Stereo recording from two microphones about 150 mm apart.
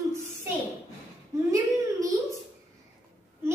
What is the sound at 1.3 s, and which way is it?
Speech, 20° right (ahead or behind).